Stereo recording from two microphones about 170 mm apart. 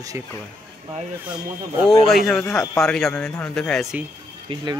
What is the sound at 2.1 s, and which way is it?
Speech, centre (ahead or behind).